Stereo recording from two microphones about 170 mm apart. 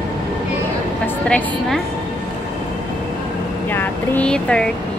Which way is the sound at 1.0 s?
5° left (ahead or behind).